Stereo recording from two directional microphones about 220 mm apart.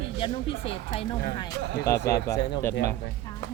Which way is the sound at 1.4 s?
15° left (ahead or behind).